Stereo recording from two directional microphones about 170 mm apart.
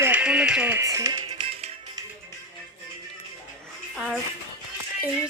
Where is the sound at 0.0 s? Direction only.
10° right (ahead or behind); by 1.7 s 30° right (ahead or behind).